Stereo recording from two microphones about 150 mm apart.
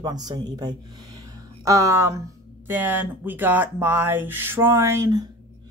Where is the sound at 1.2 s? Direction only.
20° right (ahead or behind).